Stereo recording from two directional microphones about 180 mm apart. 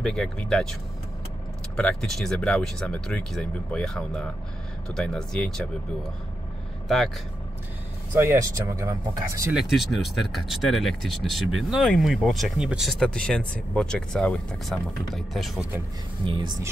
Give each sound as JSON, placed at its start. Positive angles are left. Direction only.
{"t": 0.0, "sound": "speech", "side_deg": 5}
{"t": 1.8, "sound": "speech", "side_deg": 5}
{"t": 8.1, "sound": "speech", "side_deg": -15}
{"t": 9.5, "sound": "speech", "side_deg": 0}
{"t": 16.3, "sound": "speech", "side_deg": -25}